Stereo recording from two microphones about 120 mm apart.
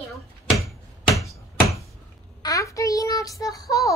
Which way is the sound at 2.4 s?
25° left (ahead or behind).